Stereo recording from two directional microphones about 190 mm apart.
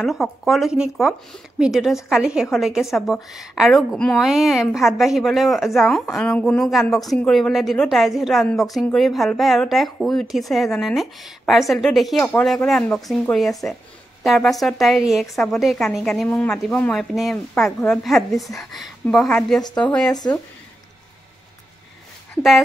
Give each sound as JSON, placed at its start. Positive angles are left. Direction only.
{"t": 0.0, "sound": "a woman's voice", "side_deg": 0}
{"t": 20.1, "sound": "speech", "side_deg": 20}
{"t": 22.3, "sound": "speech", "side_deg": 0}